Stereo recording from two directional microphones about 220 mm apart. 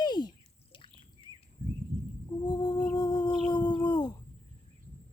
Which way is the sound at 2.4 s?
20° left (ahead or behind).